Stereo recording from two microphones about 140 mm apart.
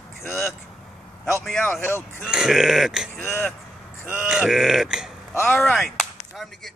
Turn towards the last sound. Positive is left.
turn(degrees=0)  # may be behind; listen again after turning